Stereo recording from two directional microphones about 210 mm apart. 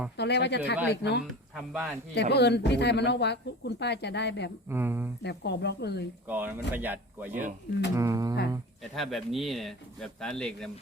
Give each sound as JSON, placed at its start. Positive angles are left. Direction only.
{"t": 0.2, "sound": "speech", "side_deg": 55}
{"t": 1.5, "sound": "speech", "side_deg": 0}
{"t": 2.1, "sound": "speech", "side_deg": 50}
{"t": 4.7, "sound": "speech", "side_deg": -10}
{"t": 5.2, "sound": "speech", "side_deg": 55}
{"t": 6.2, "sound": "speech", "side_deg": -10}
{"t": 8.8, "sound": "speech", "side_deg": 0}